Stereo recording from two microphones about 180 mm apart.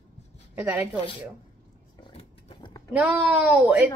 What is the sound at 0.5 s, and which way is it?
Speech, 10° right (ahead or behind).